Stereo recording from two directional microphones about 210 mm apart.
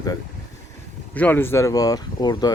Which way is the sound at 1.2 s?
10° left (ahead or behind).